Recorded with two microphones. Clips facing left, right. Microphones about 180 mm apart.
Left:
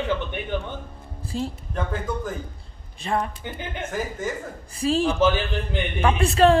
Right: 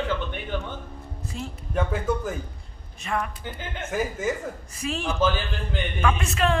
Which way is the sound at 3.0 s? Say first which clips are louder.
Left 3 dB; 30° left (ahead or behind).